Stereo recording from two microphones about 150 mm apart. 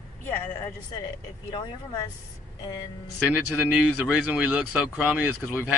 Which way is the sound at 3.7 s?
10° right (ahead or behind).